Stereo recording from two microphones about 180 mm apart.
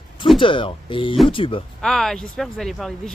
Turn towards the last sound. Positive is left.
turn(degrees=0)  # may be behind; listen again after turning